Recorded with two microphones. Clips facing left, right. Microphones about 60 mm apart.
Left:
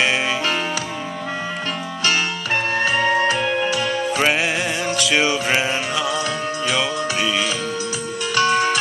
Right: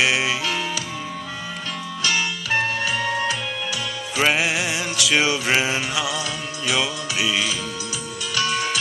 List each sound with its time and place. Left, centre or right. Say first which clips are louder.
2.0 s music: left 3 dB; left
4.2 s music: right 2 dB; centre
8.4 s music: left 6 dB; left